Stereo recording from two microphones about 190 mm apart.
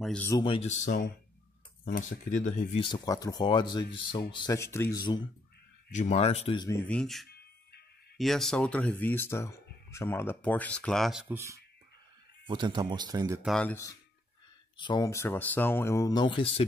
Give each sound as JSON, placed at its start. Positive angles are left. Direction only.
{"t": 0.0, "sound": "speech", "side_deg": 5}
{"t": 0.3, "sound": "speech", "side_deg": 25}
{"t": 2.8, "sound": "speech", "side_deg": 20}
{"t": 5.9, "sound": "speech", "side_deg": 40}
{"t": 6.7, "sound": "speech", "side_deg": 5}
{"t": 13.4, "sound": "speech", "side_deg": 5}
{"t": 14.8, "sound": "speech", "side_deg": 20}